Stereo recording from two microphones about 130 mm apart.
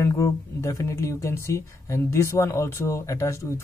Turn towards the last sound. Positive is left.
turn(degrees=25)  # may be behind; listen again after turning